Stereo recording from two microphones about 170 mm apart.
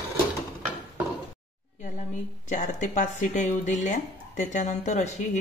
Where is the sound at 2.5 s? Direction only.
45° left (ahead or behind).